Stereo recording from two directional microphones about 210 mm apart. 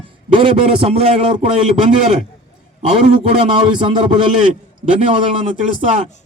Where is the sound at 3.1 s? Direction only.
20° right (ahead or behind).